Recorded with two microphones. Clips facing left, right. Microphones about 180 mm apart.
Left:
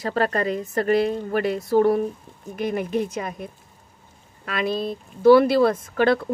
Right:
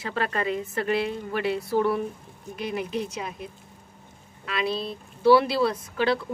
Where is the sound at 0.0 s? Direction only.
40° left (ahead or behind).